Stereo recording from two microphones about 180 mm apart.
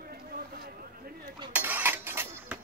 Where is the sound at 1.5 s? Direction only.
10° right (ahead or behind).